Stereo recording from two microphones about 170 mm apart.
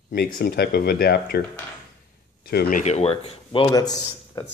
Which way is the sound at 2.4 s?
65° left (ahead or behind).